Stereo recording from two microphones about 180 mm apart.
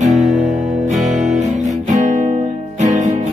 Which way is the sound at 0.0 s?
40° right (ahead or behind).